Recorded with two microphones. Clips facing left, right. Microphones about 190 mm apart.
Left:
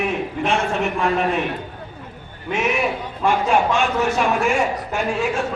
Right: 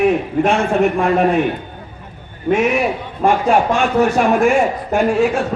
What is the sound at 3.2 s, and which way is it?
A man's voice, 55° right (ahead or behind).